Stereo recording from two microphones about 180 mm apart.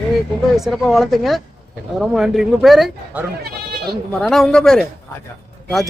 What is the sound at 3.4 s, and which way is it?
Bleat, 60° right (ahead or behind).